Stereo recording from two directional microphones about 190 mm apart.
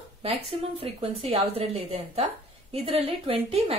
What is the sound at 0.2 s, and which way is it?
A woman's voice, 30° right (ahead or behind).